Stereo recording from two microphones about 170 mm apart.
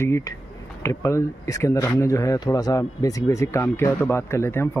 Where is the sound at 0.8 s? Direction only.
15° left (ahead or behind).